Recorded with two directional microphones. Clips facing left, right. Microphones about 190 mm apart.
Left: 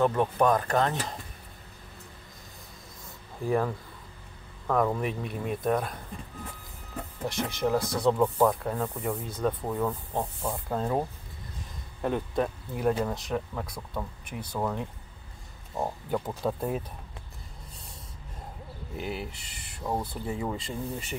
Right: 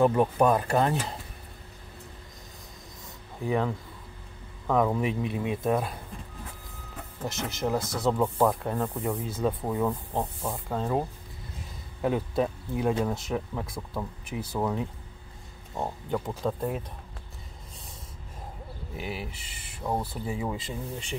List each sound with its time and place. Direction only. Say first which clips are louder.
0.0 s speech: right 2 dB; 10° right (ahead or behind)
3.4 s speech: even; centre (ahead or behind)
7.2 s speech: left 2 dB; centre (ahead or behind)
18.9 s speech: left 1 dB; 5° right (ahead or behind)